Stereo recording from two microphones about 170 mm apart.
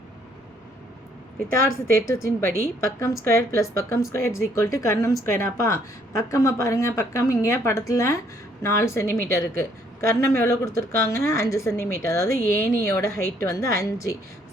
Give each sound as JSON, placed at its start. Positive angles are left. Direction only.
{"t": 1.9, "sound": "speech", "side_deg": 15}